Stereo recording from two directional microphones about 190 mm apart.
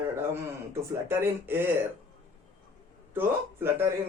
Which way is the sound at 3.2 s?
10° right (ahead or behind).